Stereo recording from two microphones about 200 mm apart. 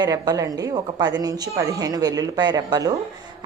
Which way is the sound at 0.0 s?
20° right (ahead or behind).